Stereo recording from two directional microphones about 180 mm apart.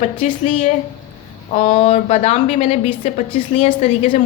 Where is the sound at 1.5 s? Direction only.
30° left (ahead or behind).